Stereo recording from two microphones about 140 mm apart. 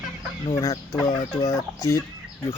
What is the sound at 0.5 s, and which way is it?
Speech, 25° left (ahead or behind).